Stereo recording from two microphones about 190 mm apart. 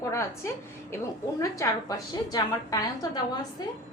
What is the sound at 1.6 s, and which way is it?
A woman's voice, 15° left (ahead or behind).